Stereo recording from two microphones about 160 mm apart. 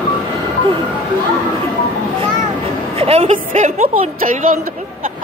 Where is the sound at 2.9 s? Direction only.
35° right (ahead or behind).